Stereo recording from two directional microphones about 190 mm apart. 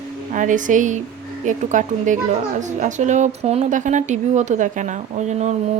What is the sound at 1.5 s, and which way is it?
Speech, 40° right (ahead or behind).